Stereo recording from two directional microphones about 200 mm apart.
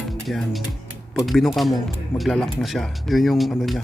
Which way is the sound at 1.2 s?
Centre (ahead or behind).